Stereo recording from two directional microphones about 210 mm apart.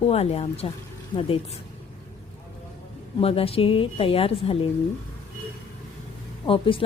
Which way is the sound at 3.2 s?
25° left (ahead or behind).